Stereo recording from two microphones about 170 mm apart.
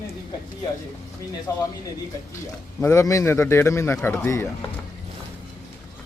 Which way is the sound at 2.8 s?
15° left (ahead or behind).